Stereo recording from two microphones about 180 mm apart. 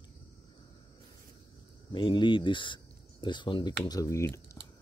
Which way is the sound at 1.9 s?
25° left (ahead or behind).